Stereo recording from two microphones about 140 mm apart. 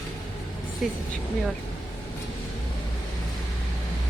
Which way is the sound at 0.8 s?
Centre (ahead or behind).